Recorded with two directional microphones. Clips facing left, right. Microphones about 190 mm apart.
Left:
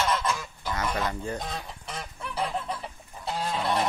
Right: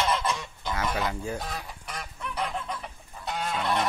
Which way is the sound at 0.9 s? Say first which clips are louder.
Even; 10° right (ahead or behind).